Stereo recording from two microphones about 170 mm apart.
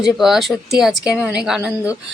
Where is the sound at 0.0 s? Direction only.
Centre (ahead or behind).